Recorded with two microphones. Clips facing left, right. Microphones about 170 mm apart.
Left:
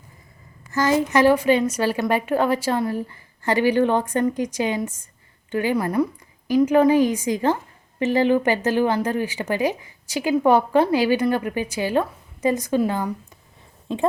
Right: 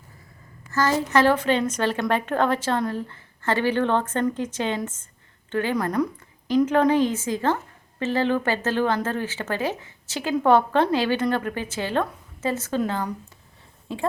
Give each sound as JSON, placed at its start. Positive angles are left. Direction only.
{"t": 0.7, "sound": "a woman's voice", "side_deg": 15}
{"t": 13.8, "sound": "speech", "side_deg": 20}